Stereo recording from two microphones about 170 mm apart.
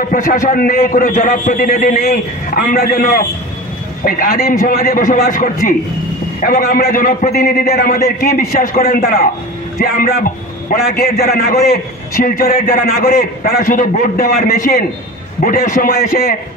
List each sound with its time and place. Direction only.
0.1 s a man's voice: 50° left (ahead or behind)